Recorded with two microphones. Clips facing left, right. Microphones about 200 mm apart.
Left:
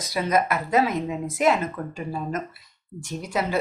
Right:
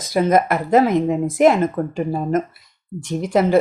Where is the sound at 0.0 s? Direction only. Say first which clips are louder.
Right 7 dB; 50° right (ahead or behind).